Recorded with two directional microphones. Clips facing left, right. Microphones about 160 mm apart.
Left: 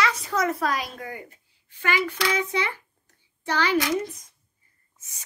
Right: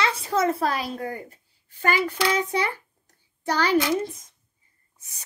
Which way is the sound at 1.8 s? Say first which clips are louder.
Right 2 dB; 40° right (ahead or behind).